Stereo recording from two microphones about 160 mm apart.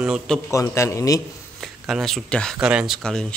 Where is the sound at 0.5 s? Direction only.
15° left (ahead or behind).